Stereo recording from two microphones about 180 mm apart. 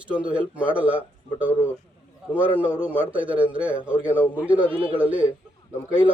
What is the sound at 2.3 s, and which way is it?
A man's voice, 10° right (ahead or behind).